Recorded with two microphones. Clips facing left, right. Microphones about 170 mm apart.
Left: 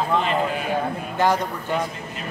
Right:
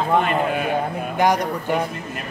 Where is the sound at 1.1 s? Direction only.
15° right (ahead or behind).